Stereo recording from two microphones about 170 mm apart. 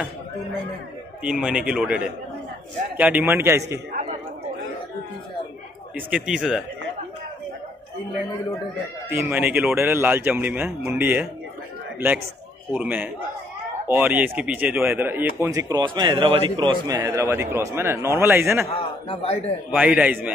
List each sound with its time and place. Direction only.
1.2 s speech: 5° right (ahead or behind)
5.9 s speech: 5° right (ahead or behind)
9.2 s speech: 10° right (ahead or behind)
12.7 s speech: 10° right (ahead or behind)
18.7 s a man's voice: 30° left (ahead or behind)
19.7 s speech: 10° right (ahead or behind)